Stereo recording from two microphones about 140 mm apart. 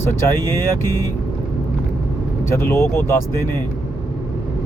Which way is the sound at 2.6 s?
20° left (ahead or behind).